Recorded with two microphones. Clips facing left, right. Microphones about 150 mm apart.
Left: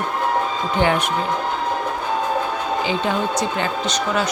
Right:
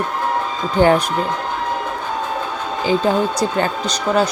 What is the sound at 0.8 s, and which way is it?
Speech, 40° right (ahead or behind).